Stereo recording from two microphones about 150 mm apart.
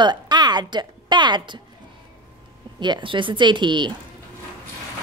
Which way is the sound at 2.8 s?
30° right (ahead or behind).